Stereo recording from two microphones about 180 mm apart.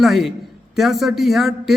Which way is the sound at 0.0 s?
Centre (ahead or behind).